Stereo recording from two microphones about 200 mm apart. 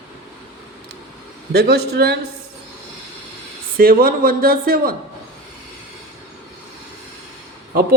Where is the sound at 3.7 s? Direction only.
45° right (ahead or behind).